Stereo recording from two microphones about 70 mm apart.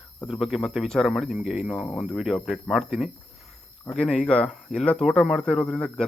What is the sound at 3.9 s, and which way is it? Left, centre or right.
Speech, centre.